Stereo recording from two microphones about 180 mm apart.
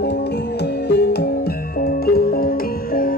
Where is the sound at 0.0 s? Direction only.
65° left (ahead or behind).